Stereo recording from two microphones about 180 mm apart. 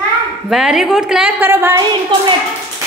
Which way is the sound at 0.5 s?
Centre (ahead or behind).